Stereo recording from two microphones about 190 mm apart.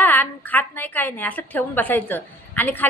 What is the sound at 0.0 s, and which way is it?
A woman's voice, 10° left (ahead or behind).